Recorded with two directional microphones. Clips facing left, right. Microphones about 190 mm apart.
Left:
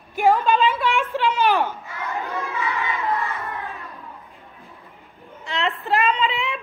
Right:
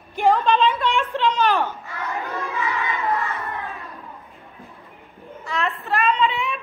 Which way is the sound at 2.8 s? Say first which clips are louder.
Right 1 dB; centre (ahead or behind).